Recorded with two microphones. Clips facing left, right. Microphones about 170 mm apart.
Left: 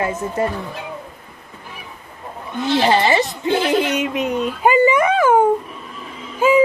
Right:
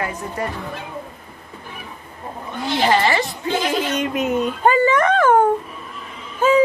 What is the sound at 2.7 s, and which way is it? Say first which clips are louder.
A man's voice: left 2 dB; 20° left (ahead or behind).